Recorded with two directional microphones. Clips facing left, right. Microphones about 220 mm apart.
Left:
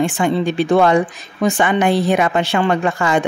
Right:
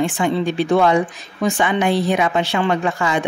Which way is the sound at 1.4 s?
50° left (ahead or behind).